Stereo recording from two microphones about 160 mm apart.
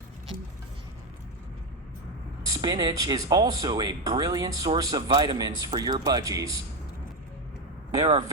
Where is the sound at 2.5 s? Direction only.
25° right (ahead or behind).